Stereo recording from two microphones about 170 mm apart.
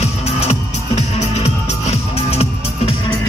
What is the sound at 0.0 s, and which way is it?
Music, 40° left (ahead or behind).